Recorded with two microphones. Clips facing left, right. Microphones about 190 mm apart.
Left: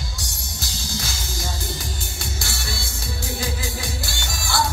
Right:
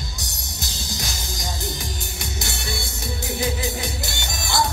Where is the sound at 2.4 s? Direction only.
20° right (ahead or behind).